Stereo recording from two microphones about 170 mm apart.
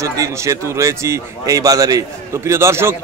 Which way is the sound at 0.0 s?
20° right (ahead or behind).